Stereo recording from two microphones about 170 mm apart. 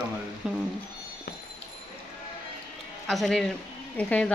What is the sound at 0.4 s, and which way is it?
Speech, 5° right (ahead or behind).